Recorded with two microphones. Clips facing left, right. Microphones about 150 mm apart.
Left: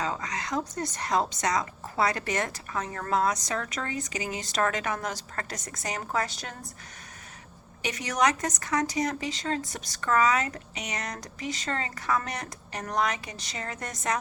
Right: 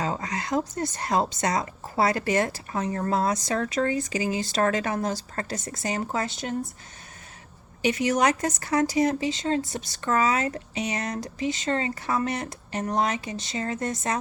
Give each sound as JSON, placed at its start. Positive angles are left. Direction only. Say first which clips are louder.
{"t": 0.0, "sound": "a woman's voice", "louder": "right 3 dB", "side_deg": -30}
{"t": 7.8, "sound": "a woman's voice", "louder": "right 4 dB", "side_deg": -30}